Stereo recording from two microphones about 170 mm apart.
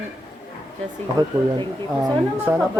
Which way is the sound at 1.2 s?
20° right (ahead or behind).